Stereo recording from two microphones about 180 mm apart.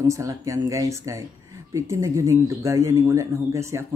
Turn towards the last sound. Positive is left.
turn(degrees=-15)  # may be behind; listen again after turning